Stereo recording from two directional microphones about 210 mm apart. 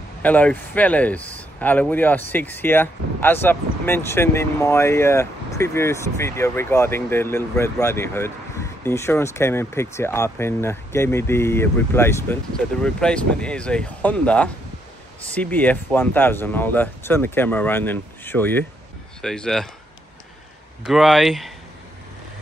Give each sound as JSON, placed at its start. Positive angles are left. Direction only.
{"t": 0.2, "sound": "a man's voice", "side_deg": 5}
{"t": 20.8, "sound": "speech", "side_deg": 0}